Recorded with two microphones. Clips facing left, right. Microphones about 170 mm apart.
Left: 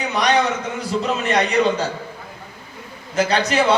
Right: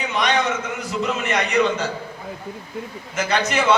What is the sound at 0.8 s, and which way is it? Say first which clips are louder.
Speech: left 2 dB; 35° left (ahead or behind).